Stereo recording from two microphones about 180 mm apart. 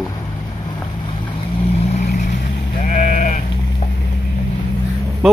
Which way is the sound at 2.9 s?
45° left (ahead or behind).